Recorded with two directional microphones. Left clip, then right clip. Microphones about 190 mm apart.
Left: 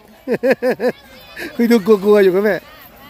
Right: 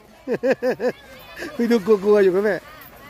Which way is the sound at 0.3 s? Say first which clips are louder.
Left 5 dB; 25° left (ahead or behind).